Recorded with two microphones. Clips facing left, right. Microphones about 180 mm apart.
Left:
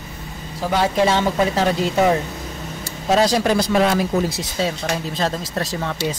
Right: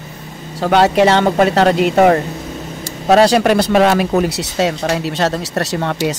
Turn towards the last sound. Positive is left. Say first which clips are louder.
# right 6 dB
turn(degrees=-70)  # may be behind; listen again after turning